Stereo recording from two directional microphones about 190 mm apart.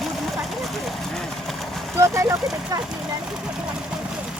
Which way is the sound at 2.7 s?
20° right (ahead or behind).